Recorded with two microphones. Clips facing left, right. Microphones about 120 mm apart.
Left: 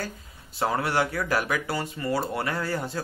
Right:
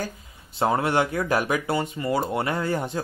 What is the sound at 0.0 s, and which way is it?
Speech, 20° right (ahead or behind).